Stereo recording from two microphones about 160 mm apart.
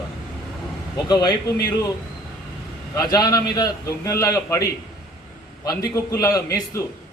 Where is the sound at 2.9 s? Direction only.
25° left (ahead or behind).